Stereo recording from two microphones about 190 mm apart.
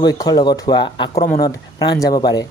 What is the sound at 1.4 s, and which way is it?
Speech, 20° left (ahead or behind).